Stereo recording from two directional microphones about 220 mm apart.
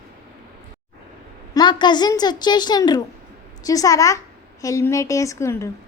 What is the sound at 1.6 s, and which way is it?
A woman's voice, 20° left (ahead or behind).